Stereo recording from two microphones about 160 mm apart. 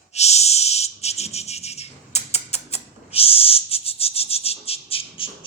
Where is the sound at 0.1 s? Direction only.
40° left (ahead or behind).